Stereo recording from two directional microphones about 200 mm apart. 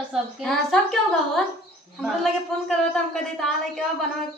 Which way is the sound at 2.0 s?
Centre (ahead or behind).